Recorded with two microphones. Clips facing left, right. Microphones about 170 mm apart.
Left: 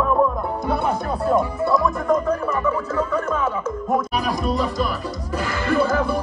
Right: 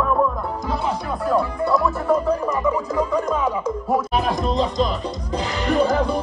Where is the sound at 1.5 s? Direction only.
Centre (ahead or behind).